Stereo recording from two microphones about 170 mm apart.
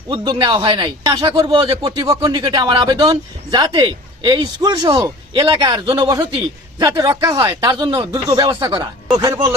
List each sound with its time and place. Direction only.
0.1 s speech: 30° right (ahead or behind)